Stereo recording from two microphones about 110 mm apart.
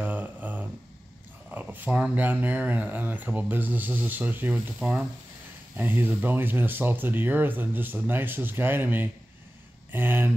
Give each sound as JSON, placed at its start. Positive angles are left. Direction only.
{"t": 0.0, "sound": "a sound", "side_deg": -15}
{"t": 1.5, "sound": "speech", "side_deg": -15}
{"t": 5.8, "sound": "speech", "side_deg": -20}